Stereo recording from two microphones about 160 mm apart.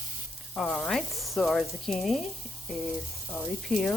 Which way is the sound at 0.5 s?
5° left (ahead or behind).